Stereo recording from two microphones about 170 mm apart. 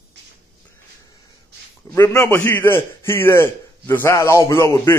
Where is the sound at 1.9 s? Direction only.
20° left (ahead or behind).